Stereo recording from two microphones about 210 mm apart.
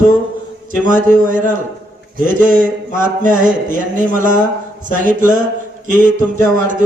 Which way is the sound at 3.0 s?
40° right (ahead or behind).